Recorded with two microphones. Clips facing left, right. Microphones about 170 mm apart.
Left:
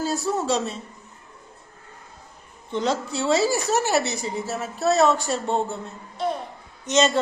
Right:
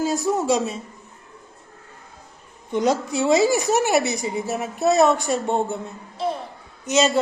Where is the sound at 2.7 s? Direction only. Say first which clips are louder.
Right 4 dB; 15° right (ahead or behind).